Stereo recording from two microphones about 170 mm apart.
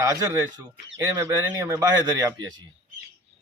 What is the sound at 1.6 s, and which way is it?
Speech, 15° right (ahead or behind).